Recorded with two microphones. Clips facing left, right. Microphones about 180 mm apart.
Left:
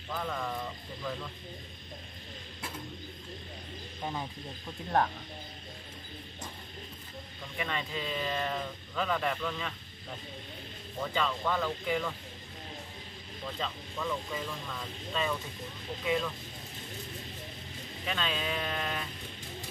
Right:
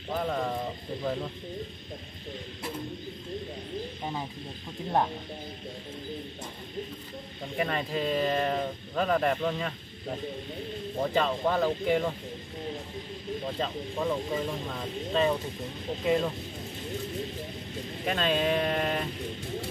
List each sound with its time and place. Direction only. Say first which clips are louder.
0.1 s speech: right 6 dB; 35° right (ahead or behind)
7.5 s speech: right 6 dB; 40° right (ahead or behind)
11.0 s speech: right 5 dB; 35° right (ahead or behind)
13.5 s speech: right 3 dB; 35° right (ahead or behind)
18.0 s speech: right 8 dB; 40° right (ahead or behind)